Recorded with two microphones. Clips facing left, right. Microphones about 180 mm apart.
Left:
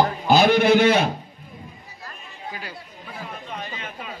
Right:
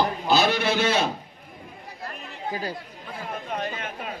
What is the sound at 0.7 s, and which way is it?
Speech, 60° left (ahead or behind).